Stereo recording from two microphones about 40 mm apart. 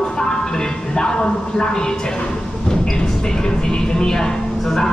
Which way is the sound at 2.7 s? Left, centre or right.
Centre.